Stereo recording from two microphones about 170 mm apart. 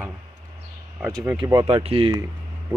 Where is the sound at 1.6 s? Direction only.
35° right (ahead or behind).